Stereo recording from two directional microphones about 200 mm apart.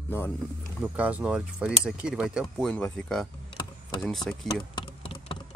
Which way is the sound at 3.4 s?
25° left (ahead or behind).